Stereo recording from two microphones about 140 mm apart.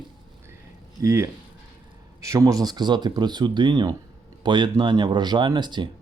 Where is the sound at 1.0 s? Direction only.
20° right (ahead or behind).